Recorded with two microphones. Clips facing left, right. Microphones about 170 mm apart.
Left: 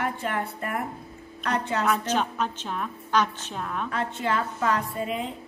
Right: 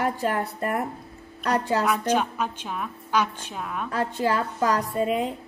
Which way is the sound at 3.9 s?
35° right (ahead or behind).